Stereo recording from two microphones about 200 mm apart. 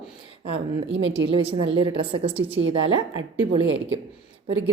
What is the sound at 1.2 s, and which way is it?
A woman's voice, 30° right (ahead or behind).